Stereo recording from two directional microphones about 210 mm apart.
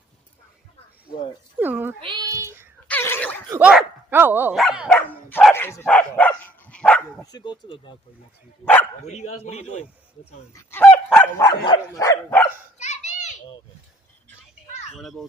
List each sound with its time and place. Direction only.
1.1 s speech: 40° left (ahead or behind)
1.5 s speech: 10° right (ahead or behind)
2.0 s child singing: 20° right (ahead or behind)
2.8 s a sound: 10° left (ahead or behind)
3.5 s speech: 5° right (ahead or behind)
4.9 s dog: 5° left (ahead or behind)
7.3 s speech: 20° left (ahead or behind)
8.6 s dog: 5° left (ahead or behind)
9.4 s speech: 30° left (ahead or behind)
10.5 s speech: 10° left (ahead or behind)
11.4 s dog: 20° left (ahead or behind)
12.8 s children playing: 35° left (ahead or behind)
14.9 s speech: centre (ahead or behind)